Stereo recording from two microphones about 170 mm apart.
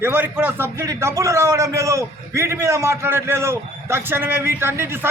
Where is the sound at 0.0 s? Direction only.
10° right (ahead or behind).